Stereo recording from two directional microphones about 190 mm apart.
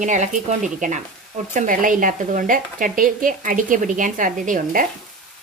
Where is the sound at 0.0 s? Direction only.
40° right (ahead or behind).